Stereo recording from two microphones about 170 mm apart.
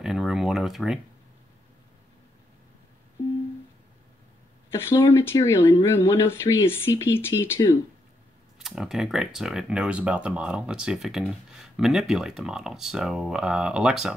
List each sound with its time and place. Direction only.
0.0 s speech: centre (ahead or behind)
4.6 s speech: 15° left (ahead or behind)
8.5 s speech: centre (ahead or behind)